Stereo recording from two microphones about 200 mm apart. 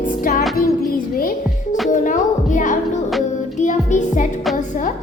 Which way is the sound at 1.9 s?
40° left (ahead or behind).